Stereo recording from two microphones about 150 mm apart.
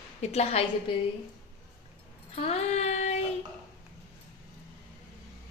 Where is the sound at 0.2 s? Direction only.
45° left (ahead or behind).